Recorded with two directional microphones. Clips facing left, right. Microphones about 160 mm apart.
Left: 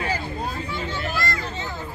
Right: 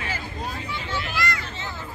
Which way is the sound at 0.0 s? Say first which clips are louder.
Left 5 dB; 40° left (ahead or behind).